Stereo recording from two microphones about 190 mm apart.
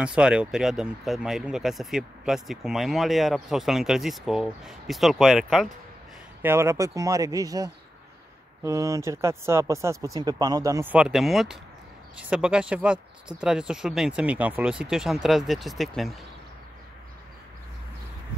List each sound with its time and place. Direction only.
0.0 s speech: 5° right (ahead or behind)
6.4 s speech: 15° right (ahead or behind)